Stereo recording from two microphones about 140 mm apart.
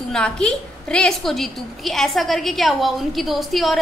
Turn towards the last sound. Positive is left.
turn(degrees=0)  # may be behind; listen again after turning